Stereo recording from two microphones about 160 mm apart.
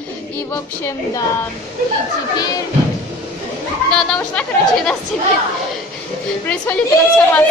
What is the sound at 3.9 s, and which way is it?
Speech, 5° left (ahead or behind).